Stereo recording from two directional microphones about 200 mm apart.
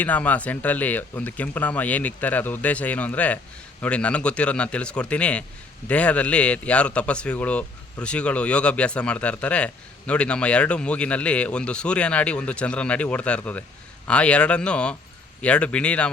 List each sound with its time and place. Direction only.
0.0 s a man's voice: 5° left (ahead or behind)